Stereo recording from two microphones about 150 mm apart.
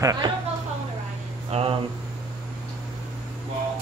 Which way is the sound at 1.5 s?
40° right (ahead or behind).